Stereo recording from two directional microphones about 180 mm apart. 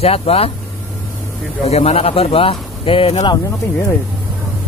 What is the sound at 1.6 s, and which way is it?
Speech, 35° left (ahead or behind).